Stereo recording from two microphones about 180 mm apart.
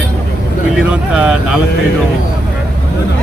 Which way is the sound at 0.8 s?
5° right (ahead or behind).